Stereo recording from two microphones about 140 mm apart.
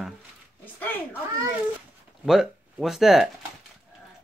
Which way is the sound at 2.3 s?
Centre (ahead or behind).